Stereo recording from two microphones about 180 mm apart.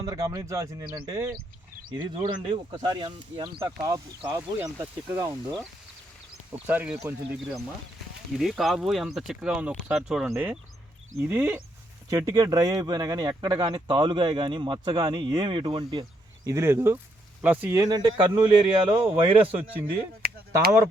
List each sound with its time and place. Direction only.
0.0 s speech: 20° right (ahead or behind)
8.4 s speech: centre (ahead or behind); by 18.9 s 25° right (ahead or behind)
19.0 s speech: 10° right (ahead or behind)
20.2 s a sound: 55° right (ahead or behind)